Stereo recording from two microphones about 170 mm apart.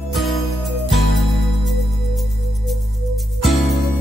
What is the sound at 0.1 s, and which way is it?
Music, centre (ahead or behind).